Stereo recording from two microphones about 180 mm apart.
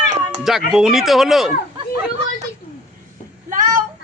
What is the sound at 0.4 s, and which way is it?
Speech, centre (ahead or behind).